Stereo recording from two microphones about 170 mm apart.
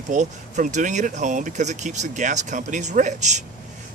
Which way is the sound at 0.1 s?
45° right (ahead or behind).